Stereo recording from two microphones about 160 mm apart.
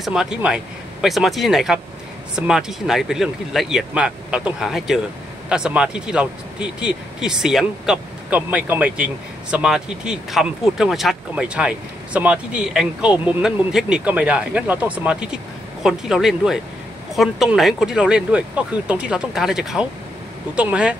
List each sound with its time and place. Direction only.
0.0 s speech: 5° right (ahead or behind)